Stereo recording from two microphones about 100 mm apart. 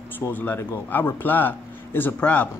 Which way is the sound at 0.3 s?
20° left (ahead or behind).